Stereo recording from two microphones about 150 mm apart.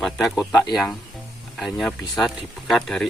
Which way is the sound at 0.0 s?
Centre (ahead or behind).